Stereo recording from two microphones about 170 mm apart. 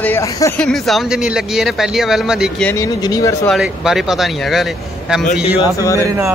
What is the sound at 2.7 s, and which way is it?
Speech, 20° left (ahead or behind).